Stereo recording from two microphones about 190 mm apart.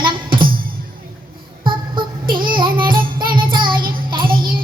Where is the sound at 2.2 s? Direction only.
50° right (ahead or behind).